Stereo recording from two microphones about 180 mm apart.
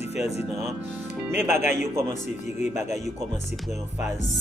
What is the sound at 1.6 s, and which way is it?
Speech, 40° left (ahead or behind).